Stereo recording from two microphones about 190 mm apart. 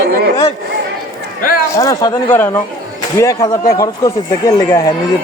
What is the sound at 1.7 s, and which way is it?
Speech, 20° left (ahead or behind).